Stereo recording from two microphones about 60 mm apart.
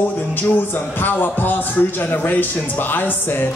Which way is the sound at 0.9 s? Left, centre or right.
Left.